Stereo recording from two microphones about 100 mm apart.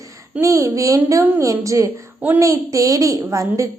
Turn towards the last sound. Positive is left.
turn(degrees=-30)  # may be behind; listen again after turning